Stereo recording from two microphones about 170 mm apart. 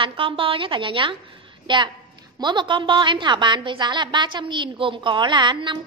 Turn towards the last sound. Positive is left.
turn(degrees=-25)  # may be behind; listen again after turning